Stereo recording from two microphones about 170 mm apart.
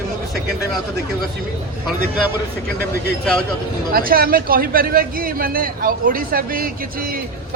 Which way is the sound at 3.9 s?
60° right (ahead or behind).